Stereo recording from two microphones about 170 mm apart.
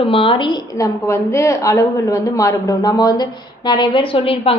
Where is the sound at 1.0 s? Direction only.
15° left (ahead or behind).